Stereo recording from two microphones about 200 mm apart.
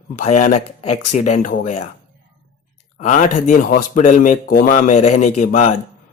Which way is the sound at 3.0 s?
40° left (ahead or behind).